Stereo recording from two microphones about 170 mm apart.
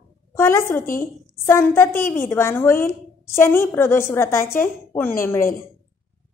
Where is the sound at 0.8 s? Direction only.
55° left (ahead or behind).